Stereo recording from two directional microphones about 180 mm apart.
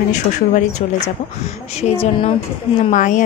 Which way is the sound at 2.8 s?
45° left (ahead or behind).